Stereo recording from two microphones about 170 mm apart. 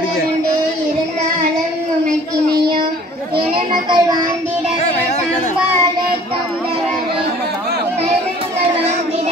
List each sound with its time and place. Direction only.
3.5 s a child's voice: 30° right (ahead or behind)